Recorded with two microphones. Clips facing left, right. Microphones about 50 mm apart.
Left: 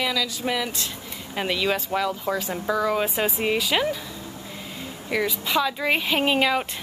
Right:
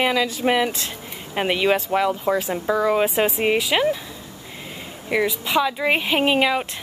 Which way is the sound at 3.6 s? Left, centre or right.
Centre.